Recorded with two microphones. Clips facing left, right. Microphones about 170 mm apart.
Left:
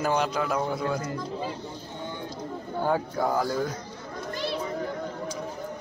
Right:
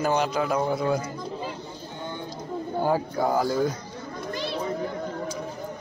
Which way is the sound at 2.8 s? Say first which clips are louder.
Right 1 dB; 5° right (ahead or behind).